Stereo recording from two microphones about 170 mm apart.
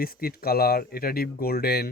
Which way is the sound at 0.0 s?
60° left (ahead or behind).